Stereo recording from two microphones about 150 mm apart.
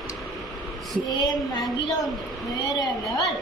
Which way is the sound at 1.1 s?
25° left (ahead or behind).